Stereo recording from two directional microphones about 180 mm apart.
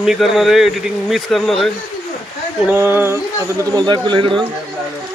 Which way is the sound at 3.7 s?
25° right (ahead or behind).